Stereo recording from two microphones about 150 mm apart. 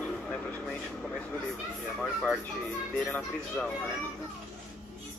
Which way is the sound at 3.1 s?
5° left (ahead or behind).